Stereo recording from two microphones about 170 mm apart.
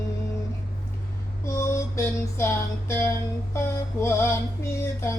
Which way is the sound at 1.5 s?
15° left (ahead or behind).